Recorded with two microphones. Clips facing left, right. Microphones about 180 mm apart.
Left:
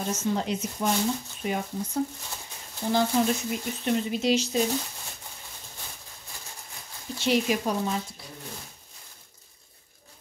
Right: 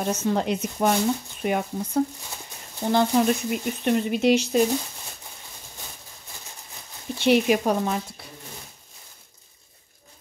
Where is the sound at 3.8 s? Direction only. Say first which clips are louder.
Right 5 dB; 60° right (ahead or behind).